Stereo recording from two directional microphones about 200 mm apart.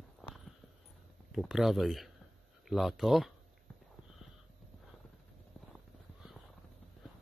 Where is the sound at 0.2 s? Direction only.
Centre (ahead or behind).